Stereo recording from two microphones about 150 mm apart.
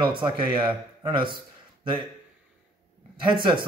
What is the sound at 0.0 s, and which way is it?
Speech, 35° right (ahead or behind).